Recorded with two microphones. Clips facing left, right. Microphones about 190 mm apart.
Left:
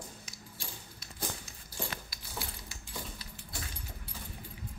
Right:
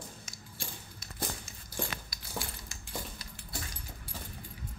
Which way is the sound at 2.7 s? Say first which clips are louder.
Even; 45° right (ahead or behind).